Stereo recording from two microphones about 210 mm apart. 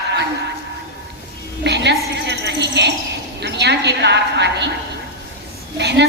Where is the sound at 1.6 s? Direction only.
55° right (ahead or behind).